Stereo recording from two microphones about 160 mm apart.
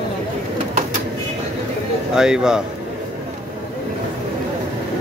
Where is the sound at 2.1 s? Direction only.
5° right (ahead or behind).